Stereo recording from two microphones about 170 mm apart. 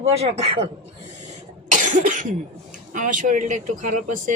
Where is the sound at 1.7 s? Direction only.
50° right (ahead or behind).